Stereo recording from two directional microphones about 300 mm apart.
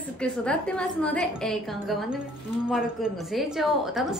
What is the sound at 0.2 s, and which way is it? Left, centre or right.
A woman's voice, centre.